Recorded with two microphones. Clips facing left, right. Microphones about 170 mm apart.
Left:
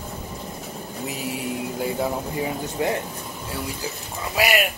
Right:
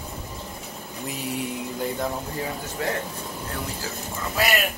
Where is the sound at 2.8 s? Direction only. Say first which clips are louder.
Left 4 dB; 20° left (ahead or behind).